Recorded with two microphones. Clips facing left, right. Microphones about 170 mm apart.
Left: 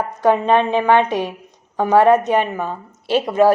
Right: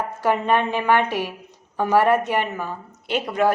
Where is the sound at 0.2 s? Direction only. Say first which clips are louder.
Left 5 dB; 20° left (ahead or behind).